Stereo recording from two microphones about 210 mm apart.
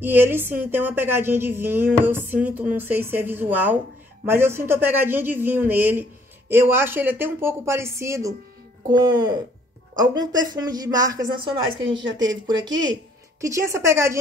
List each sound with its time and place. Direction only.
0.0 s a woman's voice: 10° right (ahead or behind)